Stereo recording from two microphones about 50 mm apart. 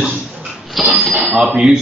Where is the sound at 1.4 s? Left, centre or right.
Centre.